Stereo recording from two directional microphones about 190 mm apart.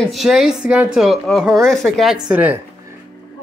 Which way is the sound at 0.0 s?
Centre (ahead or behind).